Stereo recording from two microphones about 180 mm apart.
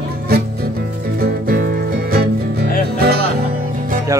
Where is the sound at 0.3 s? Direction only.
60° right (ahead or behind).